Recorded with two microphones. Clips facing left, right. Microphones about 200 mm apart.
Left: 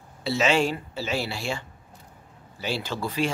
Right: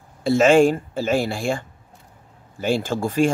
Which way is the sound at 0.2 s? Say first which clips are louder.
Right 9 dB; 50° right (ahead or behind).